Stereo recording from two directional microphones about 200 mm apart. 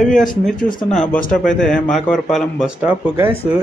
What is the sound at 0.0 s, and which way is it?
Speech, 40° left (ahead or behind).